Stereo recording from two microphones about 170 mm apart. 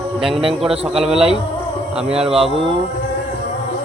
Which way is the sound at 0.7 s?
35° right (ahead or behind).